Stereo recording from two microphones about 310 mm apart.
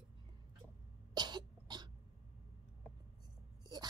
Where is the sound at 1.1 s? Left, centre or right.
Centre.